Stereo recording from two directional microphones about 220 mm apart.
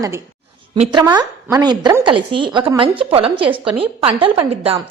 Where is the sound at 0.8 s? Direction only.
20° right (ahead or behind).